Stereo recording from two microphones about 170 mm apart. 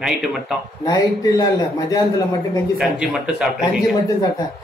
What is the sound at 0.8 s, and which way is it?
Speech, 20° left (ahead or behind).